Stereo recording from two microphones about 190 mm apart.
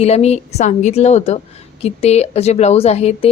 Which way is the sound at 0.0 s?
35° left (ahead or behind).